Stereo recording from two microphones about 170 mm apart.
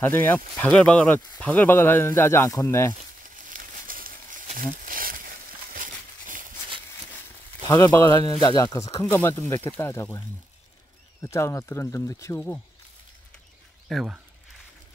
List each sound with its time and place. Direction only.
0.0 s speech: 10° left (ahead or behind)
3.3 s a sound: 55° right (ahead or behind)
7.6 s speech: 15° left (ahead or behind)
13.8 s speech: centre (ahead or behind)